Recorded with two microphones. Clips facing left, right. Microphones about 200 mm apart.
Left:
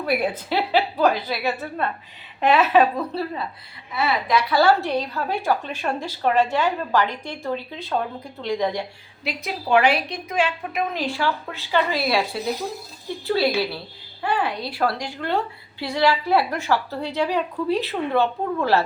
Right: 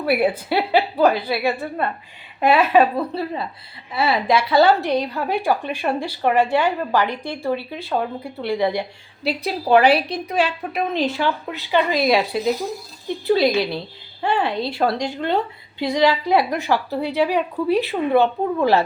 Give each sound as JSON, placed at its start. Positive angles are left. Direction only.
{"t": 0.0, "sound": "a woman's voice", "side_deg": -10}
{"t": 3.9, "sound": "a woman's voice", "side_deg": -30}
{"t": 9.2, "sound": "a woman's voice", "side_deg": -35}
{"t": 11.0, "sound": "a woman's voice", "side_deg": -20}